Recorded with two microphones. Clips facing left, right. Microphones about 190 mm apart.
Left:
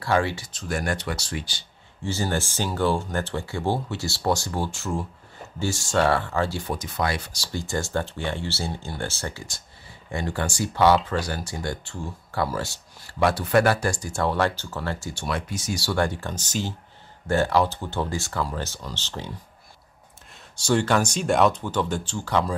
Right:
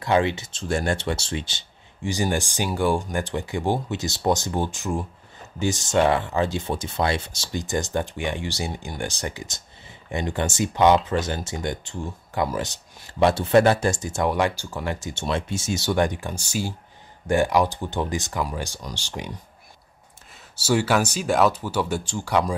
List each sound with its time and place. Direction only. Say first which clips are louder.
0.0 s speech: right 2 dB; 20° right (ahead or behind)
20.5 s speech: right 1 dB; 5° right (ahead or behind)